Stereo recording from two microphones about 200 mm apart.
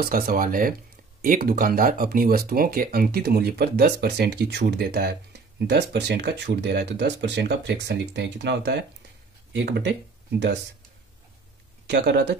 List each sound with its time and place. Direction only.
0.0 s speech: 45° right (ahead or behind)
11.9 s speech: 55° right (ahead or behind)